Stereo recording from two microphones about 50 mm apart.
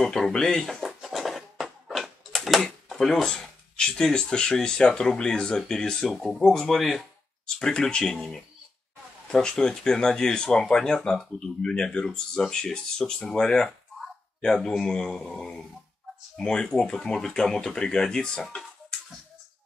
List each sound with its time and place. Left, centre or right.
0.0 s speech: centre
0.8 s a sound: centre
2.9 s speech: centre
6.2 s speech: centre
6.5 s speech: centre